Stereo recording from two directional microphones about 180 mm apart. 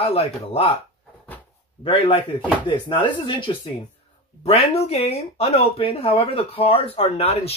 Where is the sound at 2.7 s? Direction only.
25° left (ahead or behind).